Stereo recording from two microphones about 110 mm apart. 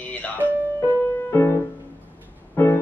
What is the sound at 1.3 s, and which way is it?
Music, 25° left (ahead or behind).